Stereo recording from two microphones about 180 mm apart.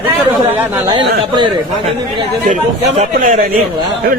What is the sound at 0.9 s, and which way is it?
Speech, 30° right (ahead or behind).